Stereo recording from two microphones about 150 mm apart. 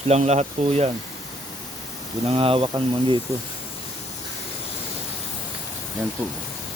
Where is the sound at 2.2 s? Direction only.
40° right (ahead or behind).